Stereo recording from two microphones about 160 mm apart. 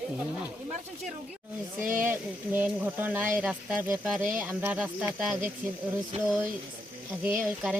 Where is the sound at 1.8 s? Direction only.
55° right (ahead or behind).